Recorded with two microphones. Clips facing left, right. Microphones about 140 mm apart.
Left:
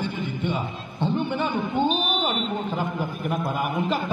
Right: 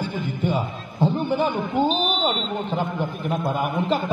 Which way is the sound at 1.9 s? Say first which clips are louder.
Right 2 dB; 35° right (ahead or behind).